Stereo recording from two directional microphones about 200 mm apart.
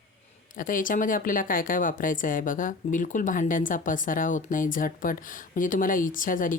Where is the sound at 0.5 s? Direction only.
40° left (ahead or behind).